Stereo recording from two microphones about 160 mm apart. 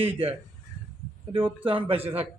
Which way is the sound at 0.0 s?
35° right (ahead or behind).